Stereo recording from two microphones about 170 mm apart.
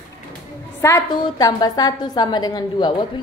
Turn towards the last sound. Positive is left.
turn(degrees=25)  # may be behind; listen again after turning